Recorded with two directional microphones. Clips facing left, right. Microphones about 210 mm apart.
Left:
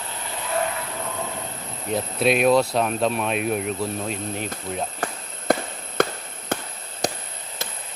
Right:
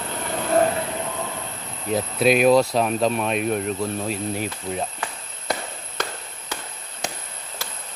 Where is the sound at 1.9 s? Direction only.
Centre (ahead or behind).